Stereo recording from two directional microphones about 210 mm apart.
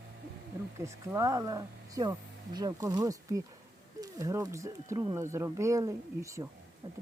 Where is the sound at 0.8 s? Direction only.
15° right (ahead or behind).